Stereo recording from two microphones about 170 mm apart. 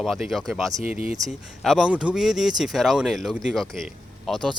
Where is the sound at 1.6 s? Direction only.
Centre (ahead or behind).